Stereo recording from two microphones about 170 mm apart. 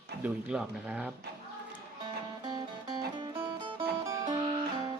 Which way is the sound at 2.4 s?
25° right (ahead or behind).